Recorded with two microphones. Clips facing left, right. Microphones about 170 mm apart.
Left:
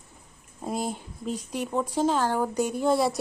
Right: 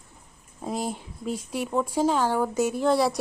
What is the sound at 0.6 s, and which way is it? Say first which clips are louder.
A woman's voice: even; centre (ahead or behind).